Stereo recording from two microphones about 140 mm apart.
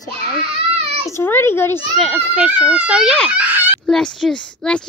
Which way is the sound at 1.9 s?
Centre (ahead or behind).